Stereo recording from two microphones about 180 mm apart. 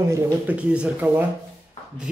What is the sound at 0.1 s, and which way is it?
Speech, 10° right (ahead or behind).